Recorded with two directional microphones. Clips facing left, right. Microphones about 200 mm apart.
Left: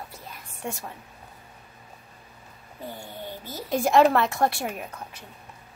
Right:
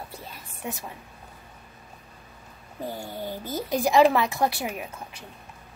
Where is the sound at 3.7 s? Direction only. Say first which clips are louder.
Even; centre (ahead or behind).